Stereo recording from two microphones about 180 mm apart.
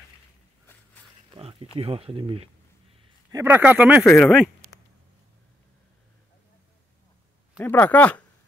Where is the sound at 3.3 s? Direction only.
15° right (ahead or behind).